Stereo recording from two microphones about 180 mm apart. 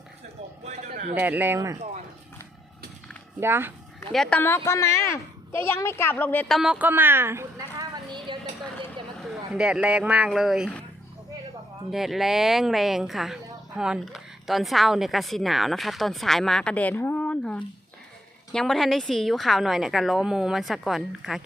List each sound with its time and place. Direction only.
0.6 s a sound: 40° right (ahead or behind)
1.1 s speech: 10° right (ahead or behind)
3.4 s speech: 15° right (ahead or behind)
4.1 s speech: 5° left (ahead or behind)
6.6 s speech: 5° right (ahead or behind)
8.3 s a sound: 25° right (ahead or behind)
9.1 s speech: centre (ahead or behind)
11.9 s a woman's voice: centre (ahead or behind)